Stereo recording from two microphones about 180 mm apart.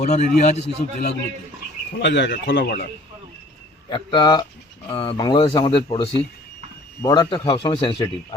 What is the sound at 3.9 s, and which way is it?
Speech, 25° left (ahead or behind).